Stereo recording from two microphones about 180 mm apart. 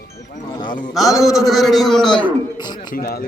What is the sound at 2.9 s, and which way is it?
Speech, 55° left (ahead or behind).